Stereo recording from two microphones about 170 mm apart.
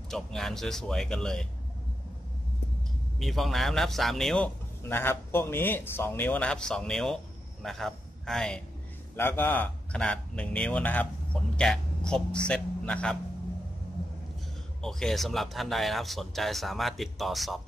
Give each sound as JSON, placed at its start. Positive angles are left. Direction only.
{"t": 0.1, "sound": "a man's voice", "side_deg": 5}
{"t": 3.2, "sound": "a man's voice", "side_deg": 0}
{"t": 9.1, "sound": "a man's voice", "side_deg": 15}
{"t": 14.8, "sound": "a man's voice", "side_deg": 5}